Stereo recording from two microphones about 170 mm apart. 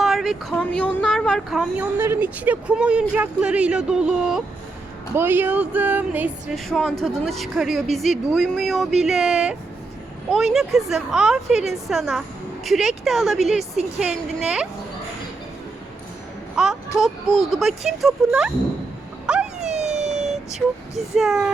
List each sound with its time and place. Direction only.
0.0 s speech: centre (ahead or behind)
6.7 s speech: centre (ahead or behind)
16.6 s speech: centre (ahead or behind)
19.2 s a sound: 5° right (ahead or behind)
19.6 s emergency vehicle: 40° right (ahead or behind)
20.1 s speech: centre (ahead or behind)